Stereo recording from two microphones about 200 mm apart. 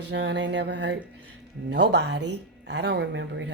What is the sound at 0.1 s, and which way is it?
Speech, 60° right (ahead or behind).